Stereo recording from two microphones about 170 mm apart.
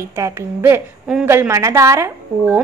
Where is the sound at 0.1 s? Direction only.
15° right (ahead or behind).